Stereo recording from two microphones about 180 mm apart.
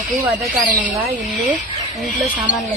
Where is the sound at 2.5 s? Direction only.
45° left (ahead or behind).